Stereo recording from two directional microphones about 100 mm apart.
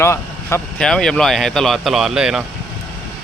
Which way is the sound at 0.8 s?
5° left (ahead or behind).